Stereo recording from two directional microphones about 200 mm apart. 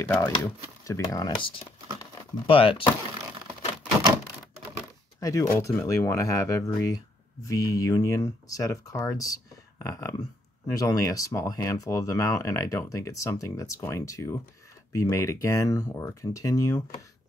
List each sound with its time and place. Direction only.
0.0 s speech: 10° left (ahead or behind); by 2.8 s 25° left (ahead or behind)
5.2 s speech: 15° left (ahead or behind)